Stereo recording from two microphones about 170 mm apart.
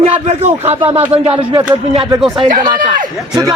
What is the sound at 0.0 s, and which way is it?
Speech, 35° right (ahead or behind).